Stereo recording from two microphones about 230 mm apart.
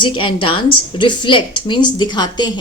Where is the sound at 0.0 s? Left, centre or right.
Left.